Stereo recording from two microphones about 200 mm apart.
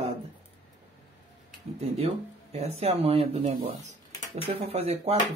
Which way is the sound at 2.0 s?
30° right (ahead or behind).